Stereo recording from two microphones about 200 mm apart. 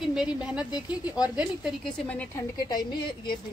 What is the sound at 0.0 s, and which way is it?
Speech, 5° right (ahead or behind).